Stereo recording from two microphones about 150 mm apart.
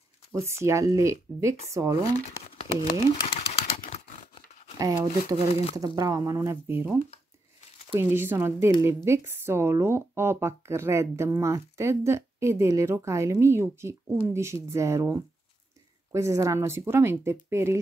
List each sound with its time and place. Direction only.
0.3 s speech: 20° right (ahead or behind)
2.1 s speech: 40° left (ahead or behind)
4.7 s speech: 20° right (ahead or behind)
5.5 s speech: 45° left (ahead or behind)
5.9 s speech: 25° right (ahead or behind)
7.9 s speech: 15° right (ahead or behind)